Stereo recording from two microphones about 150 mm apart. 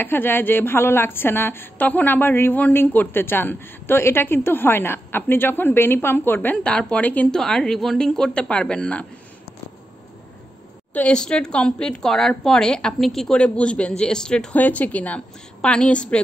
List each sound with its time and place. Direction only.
0.0 s a woman's voice: 15° left (ahead or behind)
10.9 s a woman's voice: 10° left (ahead or behind)